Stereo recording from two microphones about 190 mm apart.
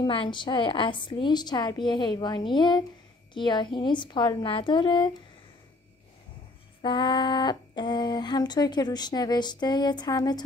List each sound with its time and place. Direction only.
0.0 s speech: 25° left (ahead or behind)
6.8 s speech: 25° left (ahead or behind)